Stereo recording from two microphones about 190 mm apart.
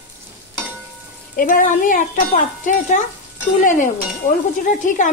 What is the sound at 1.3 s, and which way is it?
Speech, 50° left (ahead or behind).